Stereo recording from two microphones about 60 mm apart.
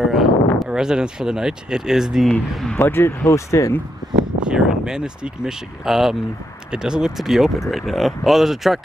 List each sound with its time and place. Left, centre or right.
0.0 s a sound: centre
0.7 s speech: centre
2.8 s speech: left
3.3 s speech: left
4.4 s speech: centre